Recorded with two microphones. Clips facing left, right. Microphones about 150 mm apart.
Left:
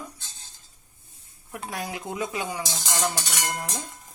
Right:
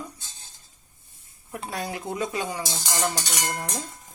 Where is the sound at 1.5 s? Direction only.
5° left (ahead or behind).